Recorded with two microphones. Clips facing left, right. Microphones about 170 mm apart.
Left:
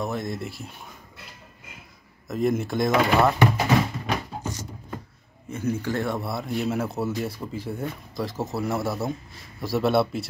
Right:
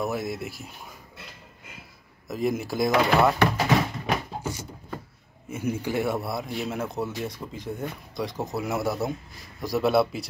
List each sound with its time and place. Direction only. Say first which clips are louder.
0.0 s a man's voice: even; 5° right (ahead or behind)
2.2 s a man's voice: left 3 dB; centre (ahead or behind)
4.4 s a sound: even; 10° right (ahead or behind)
5.5 s a man's voice: left 1 dB; 10° right (ahead or behind)